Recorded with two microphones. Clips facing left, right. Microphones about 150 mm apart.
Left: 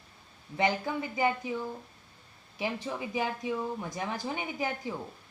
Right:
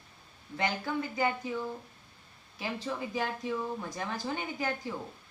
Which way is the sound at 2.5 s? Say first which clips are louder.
Left 2 dB; 15° left (ahead or behind).